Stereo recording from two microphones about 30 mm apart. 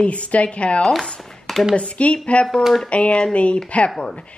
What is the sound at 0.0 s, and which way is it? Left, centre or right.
A woman's voice, left.